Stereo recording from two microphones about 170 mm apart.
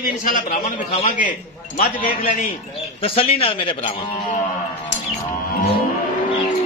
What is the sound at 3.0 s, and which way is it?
Speech, 35° left (ahead or behind).